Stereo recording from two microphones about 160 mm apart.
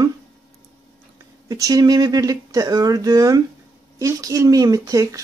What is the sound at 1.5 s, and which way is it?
Speech, 25° right (ahead or behind).